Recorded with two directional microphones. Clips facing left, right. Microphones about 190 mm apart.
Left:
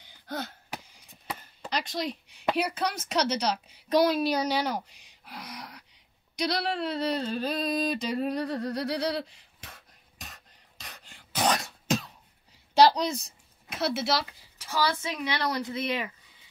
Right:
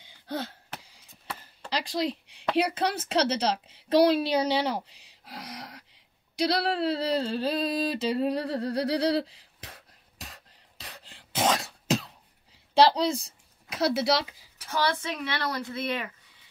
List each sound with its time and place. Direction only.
0.0 s chop: 30° right (ahead or behind)
1.7 s a woman's voice: 30° right (ahead or behind)
5.4 s a sound: 75° right (ahead or behind)
6.3 s a sound: 30° right (ahead or behind)
10.3 s cough: 30° right (ahead or behind)
12.7 s a woman's voice: 30° right (ahead or behind)
14.7 s speech: 10° left (ahead or behind)